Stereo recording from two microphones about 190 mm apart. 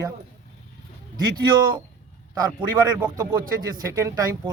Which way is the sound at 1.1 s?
20° right (ahead or behind).